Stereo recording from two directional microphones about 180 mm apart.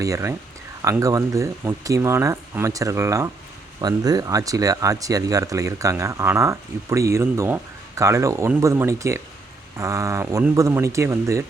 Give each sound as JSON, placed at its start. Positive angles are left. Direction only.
{"t": 0.0, "sound": "speech", "side_deg": -15}